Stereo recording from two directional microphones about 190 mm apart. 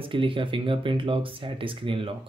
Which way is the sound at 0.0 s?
25° right (ahead or behind).